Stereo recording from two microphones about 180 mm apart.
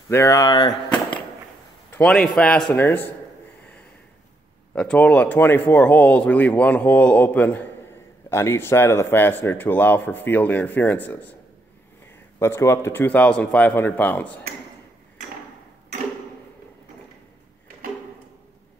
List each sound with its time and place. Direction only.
0.1 s speech: 15° left (ahead or behind)
1.9 s a man's voice: 5° left (ahead or behind)
4.7 s speech: 5° left (ahead or behind)
12.4 s speech: 15° left (ahead or behind)